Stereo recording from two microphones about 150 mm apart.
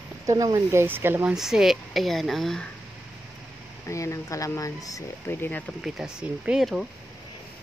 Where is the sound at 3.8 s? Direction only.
20° left (ahead or behind).